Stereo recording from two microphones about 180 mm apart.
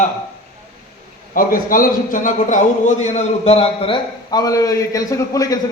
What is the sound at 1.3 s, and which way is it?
A man's voice, 50° left (ahead or behind).